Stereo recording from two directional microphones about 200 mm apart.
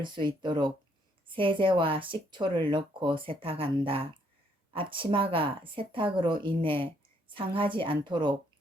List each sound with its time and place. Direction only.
0.0 s speech: 25° right (ahead or behind)